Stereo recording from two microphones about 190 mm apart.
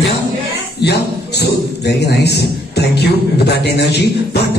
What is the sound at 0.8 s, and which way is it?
A man's voice, 60° left (ahead or behind).